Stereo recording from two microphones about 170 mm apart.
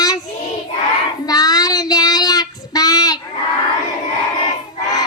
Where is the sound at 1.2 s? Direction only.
20° left (ahead or behind).